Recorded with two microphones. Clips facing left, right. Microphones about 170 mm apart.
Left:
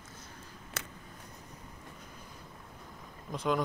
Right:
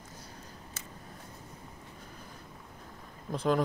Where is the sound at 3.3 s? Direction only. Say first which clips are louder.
Right 3 dB; 30° right (ahead or behind).